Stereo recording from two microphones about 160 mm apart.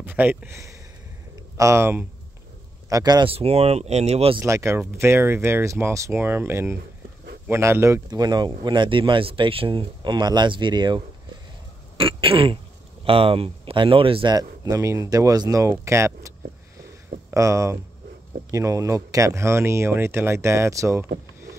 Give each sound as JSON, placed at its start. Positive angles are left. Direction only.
{"t": 0.0, "sound": "speech", "side_deg": -10}
{"t": 3.3, "sound": "speech", "side_deg": -40}
{"t": 4.4, "sound": "speech", "side_deg": -15}
{"t": 12.0, "sound": "speech", "side_deg": -35}